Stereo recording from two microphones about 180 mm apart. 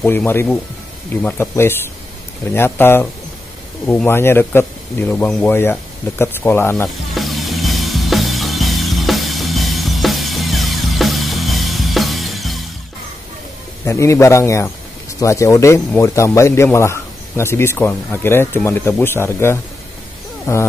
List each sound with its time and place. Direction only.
0.0 s a man's voice: 10° left (ahead or behind)
7.2 s music: centre (ahead or behind)
13.8 s a man's voice: 15° left (ahead or behind)